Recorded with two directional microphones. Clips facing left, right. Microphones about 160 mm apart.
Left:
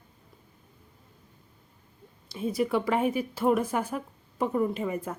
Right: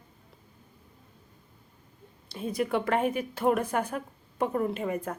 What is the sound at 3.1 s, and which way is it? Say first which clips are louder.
Speech: left 2 dB; 50° right (ahead or behind).